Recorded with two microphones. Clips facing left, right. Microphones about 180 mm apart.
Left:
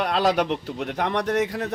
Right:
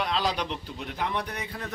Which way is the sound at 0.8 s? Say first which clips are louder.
Left 7 dB; 70° left (ahead or behind).